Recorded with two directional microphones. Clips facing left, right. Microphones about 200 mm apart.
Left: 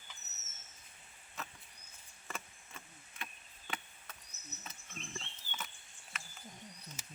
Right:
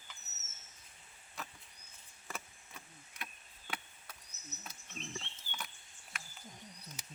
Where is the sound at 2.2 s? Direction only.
Centre (ahead or behind).